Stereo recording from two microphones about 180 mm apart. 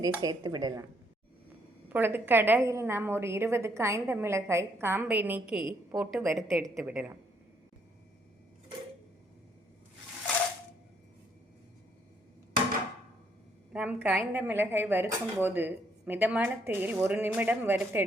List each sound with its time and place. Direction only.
0.0 s speech: 20° right (ahead or behind)
1.9 s a woman's voice: 10° right (ahead or behind)
13.7 s speech: 10° right (ahead or behind)